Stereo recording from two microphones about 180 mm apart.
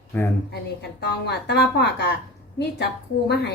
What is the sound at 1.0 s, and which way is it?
A woman's voice, 70° left (ahead or behind).